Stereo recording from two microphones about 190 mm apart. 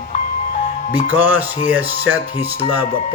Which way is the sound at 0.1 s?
40° left (ahead or behind).